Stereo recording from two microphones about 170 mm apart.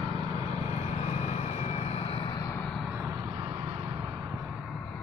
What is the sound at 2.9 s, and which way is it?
Vehicle, 20° right (ahead or behind).